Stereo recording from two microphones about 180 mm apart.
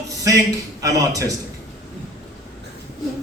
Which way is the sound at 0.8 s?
20° right (ahead or behind).